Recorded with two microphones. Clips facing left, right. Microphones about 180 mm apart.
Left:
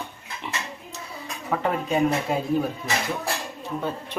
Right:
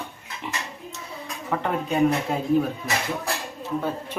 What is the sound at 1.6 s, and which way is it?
Speech, 5° left (ahead or behind).